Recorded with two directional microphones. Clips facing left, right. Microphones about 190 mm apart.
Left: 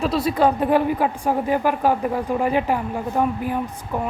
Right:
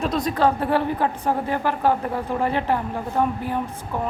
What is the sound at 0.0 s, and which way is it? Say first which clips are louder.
A woman's voice: left 2 dB; 5° left (ahead or behind).